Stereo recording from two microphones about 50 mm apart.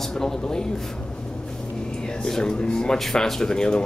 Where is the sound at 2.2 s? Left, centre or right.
Centre.